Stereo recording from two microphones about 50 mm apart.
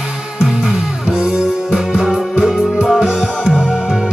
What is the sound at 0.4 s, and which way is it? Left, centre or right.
Music, centre.